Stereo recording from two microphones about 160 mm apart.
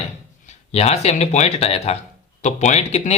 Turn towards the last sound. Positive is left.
turn(degrees=45)  # may be behind; listen again after turning